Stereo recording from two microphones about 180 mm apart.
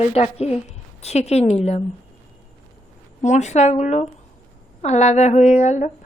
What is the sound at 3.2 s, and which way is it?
A woman's voice, 40° left (ahead or behind).